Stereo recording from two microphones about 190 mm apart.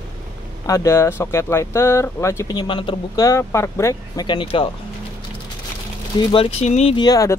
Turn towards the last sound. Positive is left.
turn(degrees=20)  # may be behind; listen again after turning